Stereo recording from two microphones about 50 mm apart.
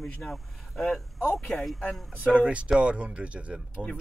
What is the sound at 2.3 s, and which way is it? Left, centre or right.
Speech, right.